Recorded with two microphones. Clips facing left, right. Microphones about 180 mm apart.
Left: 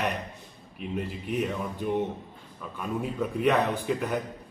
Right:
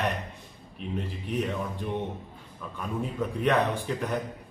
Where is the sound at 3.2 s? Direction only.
Centre (ahead or behind).